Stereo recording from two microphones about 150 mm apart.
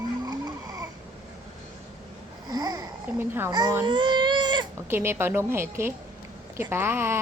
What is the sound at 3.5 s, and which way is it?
Speech, 25° right (ahead or behind).